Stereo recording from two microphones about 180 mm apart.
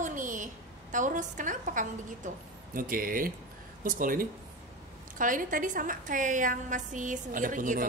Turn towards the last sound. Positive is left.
turn(degrees=-45)  # may be behind; listen again after turning